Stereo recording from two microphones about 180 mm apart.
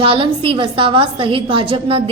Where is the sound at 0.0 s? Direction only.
30° right (ahead or behind).